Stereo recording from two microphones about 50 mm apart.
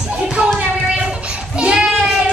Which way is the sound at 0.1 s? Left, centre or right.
Right.